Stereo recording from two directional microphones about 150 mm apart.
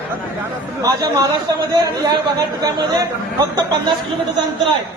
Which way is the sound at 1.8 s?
25° right (ahead or behind).